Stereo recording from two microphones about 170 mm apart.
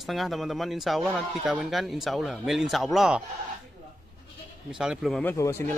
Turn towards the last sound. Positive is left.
turn(degrees=15)  # may be behind; listen again after turning